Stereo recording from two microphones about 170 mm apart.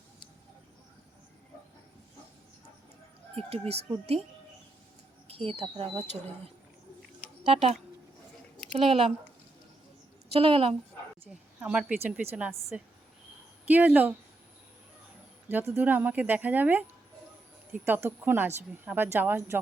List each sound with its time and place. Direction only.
3.3 s speech: 35° right (ahead or behind)
5.3 s speech: 35° right (ahead or behind)
7.4 s speech: 35° right (ahead or behind)
10.2 s speech: 35° right (ahead or behind)
11.6 s speech: 5° right (ahead or behind)
13.7 s speech: 10° right (ahead or behind)
15.4 s speech: 10° right (ahead or behind)
17.8 s speech: 10° right (ahead or behind)